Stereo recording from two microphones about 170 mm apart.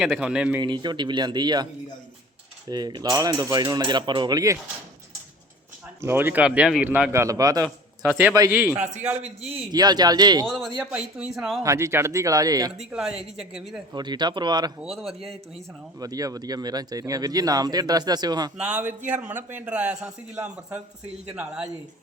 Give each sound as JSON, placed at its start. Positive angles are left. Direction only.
{"t": 0.0, "sound": "speech", "side_deg": -5}
{"t": 0.6, "sound": "speech", "side_deg": -25}
{"t": 2.6, "sound": "speech", "side_deg": -25}
{"t": 6.0, "sound": "a man's voice", "side_deg": -15}
{"t": 9.7, "sound": "speech", "side_deg": -25}
{"t": 10.4, "sound": "speech", "side_deg": 0}
{"t": 11.6, "sound": "speech", "side_deg": -15}
{"t": 12.7, "sound": "speech", "side_deg": 0}
{"t": 13.9, "sound": "speech", "side_deg": -25}
{"t": 14.8, "sound": "speech", "side_deg": 0}
{"t": 16.0, "sound": "speech", "side_deg": -20}
{"t": 18.5, "sound": "a man's voice", "side_deg": -5}